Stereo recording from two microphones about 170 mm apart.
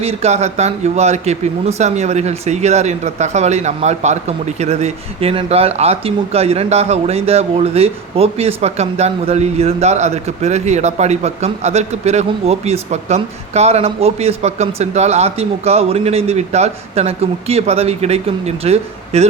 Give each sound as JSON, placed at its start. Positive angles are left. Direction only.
{"t": 0.0, "sound": "speech", "side_deg": -40}